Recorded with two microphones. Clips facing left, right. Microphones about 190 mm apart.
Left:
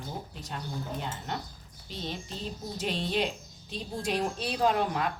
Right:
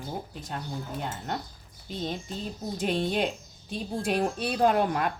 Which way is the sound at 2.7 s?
50° right (ahead or behind).